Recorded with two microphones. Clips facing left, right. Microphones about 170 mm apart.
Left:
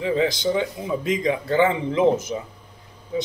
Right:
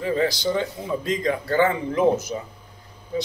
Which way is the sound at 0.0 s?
20° left (ahead or behind).